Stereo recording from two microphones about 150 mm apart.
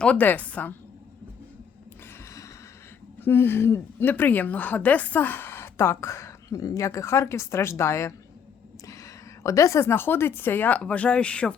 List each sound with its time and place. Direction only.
0.0 s a woman's voice: 10° left (ahead or behind)
3.2 s a woman's voice: 15° left (ahead or behind)
9.4 s a woman's voice: 20° left (ahead or behind)